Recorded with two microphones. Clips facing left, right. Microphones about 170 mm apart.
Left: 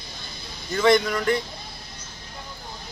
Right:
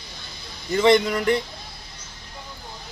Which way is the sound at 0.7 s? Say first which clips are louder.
Right 2 dB; 20° right (ahead or behind).